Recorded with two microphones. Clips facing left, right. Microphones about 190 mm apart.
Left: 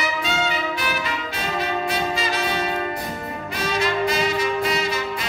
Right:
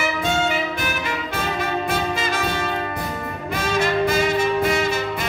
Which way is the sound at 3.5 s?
50° right (ahead or behind).